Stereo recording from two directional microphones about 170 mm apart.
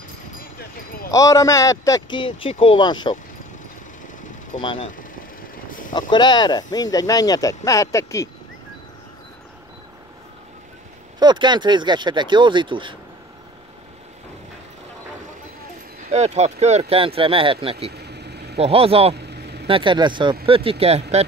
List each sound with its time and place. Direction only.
0.6 s wind chime: 60° left (ahead or behind)
1.1 s speech: 20° left (ahead or behind)
4.6 s speech: 30° left (ahead or behind)
5.7 s vehicle: 55° left (ahead or behind)
5.9 s speech: 25° left (ahead or behind)
11.1 s speech: 25° right (ahead or behind)
16.1 s speech: 40° right (ahead or behind)
17.9 s vehicle: 75° right (ahead or behind)
18.6 s speech: 35° right (ahead or behind)
19.1 s vehicle: 75° right (ahead or behind)
19.7 s speech: 30° right (ahead or behind)